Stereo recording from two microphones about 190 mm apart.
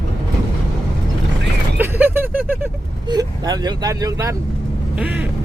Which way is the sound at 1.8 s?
10° right (ahead or behind).